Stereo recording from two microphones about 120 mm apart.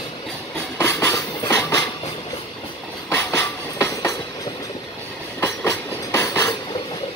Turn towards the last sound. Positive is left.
turn(degrees=25)  # may be behind; listen again after turning